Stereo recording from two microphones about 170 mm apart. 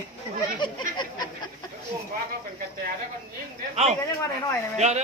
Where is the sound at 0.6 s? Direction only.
25° left (ahead or behind).